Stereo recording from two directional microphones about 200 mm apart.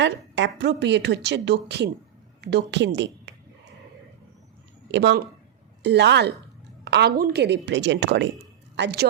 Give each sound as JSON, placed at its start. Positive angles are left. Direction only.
{"t": 0.0, "sound": "a woman's voice", "side_deg": -65}
{"t": 4.9, "sound": "a woman's voice", "side_deg": -60}